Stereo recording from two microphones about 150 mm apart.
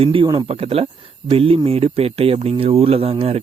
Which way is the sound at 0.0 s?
35° right (ahead or behind).